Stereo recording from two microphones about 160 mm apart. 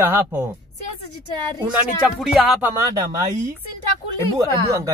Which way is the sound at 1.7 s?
5° right (ahead or behind).